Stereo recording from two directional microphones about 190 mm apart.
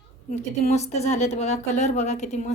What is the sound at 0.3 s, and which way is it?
A woman's voice, 40° left (ahead or behind).